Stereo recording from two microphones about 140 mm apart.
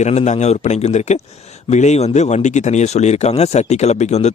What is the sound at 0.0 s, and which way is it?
Speech, 55° left (ahead or behind).